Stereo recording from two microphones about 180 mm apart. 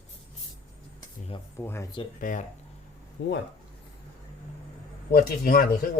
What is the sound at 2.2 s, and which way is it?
Speech, 45° left (ahead or behind).